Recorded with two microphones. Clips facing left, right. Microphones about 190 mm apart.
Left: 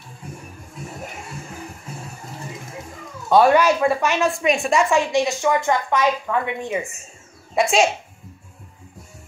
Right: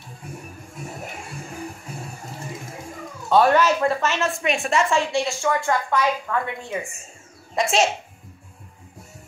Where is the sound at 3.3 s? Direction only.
10° left (ahead or behind).